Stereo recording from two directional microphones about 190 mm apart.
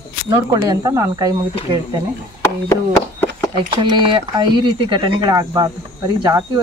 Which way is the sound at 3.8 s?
25° right (ahead or behind).